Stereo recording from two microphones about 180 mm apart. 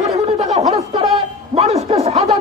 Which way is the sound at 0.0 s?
35° right (ahead or behind).